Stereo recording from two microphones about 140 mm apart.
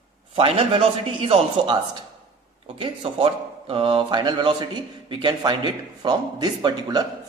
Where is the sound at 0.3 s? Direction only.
40° right (ahead or behind).